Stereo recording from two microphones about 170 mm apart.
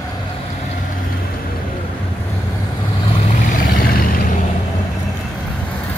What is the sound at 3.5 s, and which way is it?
Vehicle, 55° left (ahead or behind).